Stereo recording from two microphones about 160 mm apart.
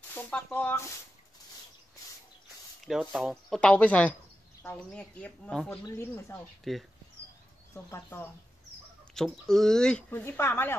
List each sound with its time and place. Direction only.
0.1 s speech: 10° left (ahead or behind)
2.8 s speech: 5° right (ahead or behind)
5.9 s speech: 15° left (ahead or behind)
6.7 s speech: centre (ahead or behind)
7.7 s speech: 15° left (ahead or behind)
9.1 s speech: 5° left (ahead or behind)